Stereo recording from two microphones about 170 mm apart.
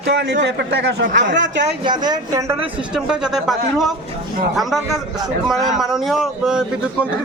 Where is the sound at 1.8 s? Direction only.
25° right (ahead or behind).